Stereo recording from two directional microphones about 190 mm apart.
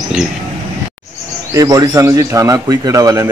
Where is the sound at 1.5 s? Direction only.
20° right (ahead or behind).